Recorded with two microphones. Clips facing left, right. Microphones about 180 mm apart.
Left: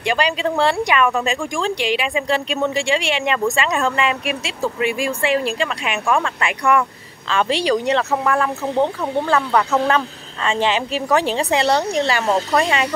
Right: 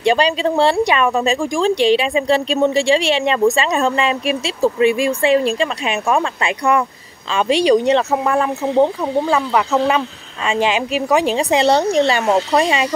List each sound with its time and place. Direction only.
0.0 s speech: 25° right (ahead or behind)
11.6 s speech: 25° right (ahead or behind)